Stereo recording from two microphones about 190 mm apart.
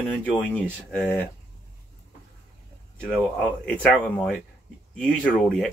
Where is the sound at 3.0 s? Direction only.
5° left (ahead or behind).